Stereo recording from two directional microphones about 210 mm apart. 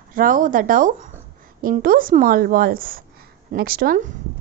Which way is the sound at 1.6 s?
40° right (ahead or behind).